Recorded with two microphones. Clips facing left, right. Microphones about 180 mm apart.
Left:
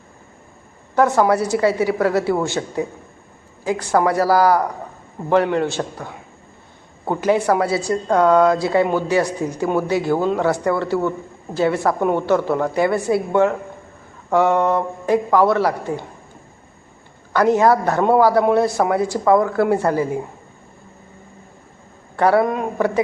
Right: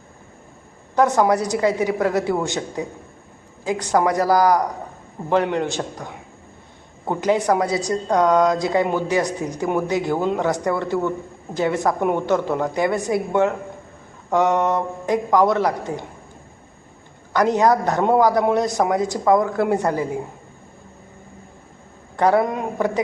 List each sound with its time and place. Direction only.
0.9 s a woman's voice: 15° right (ahead or behind)
17.3 s a woman's voice: 20° right (ahead or behind)
22.1 s a woman's voice: 15° right (ahead or behind)